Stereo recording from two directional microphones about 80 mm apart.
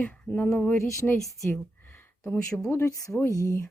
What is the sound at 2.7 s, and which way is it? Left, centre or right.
Speech, left.